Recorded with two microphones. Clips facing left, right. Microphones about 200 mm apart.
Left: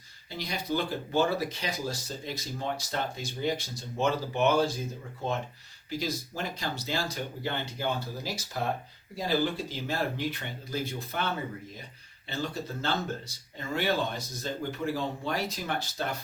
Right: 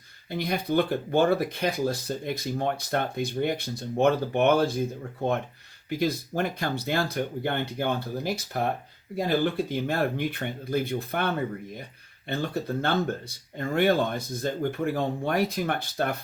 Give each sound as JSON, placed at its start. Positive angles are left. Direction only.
{"t": 0.3, "sound": "speech", "side_deg": -55}